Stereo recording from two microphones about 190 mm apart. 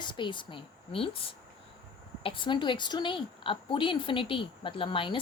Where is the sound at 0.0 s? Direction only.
25° left (ahead or behind).